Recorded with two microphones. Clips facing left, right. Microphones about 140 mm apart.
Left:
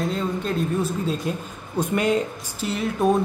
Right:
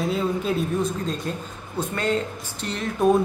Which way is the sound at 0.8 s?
5° left (ahead or behind).